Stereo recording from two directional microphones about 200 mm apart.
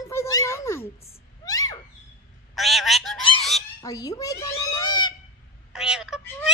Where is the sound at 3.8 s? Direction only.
15° left (ahead or behind).